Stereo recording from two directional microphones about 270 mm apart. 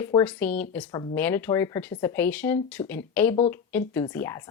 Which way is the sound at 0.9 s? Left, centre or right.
Centre.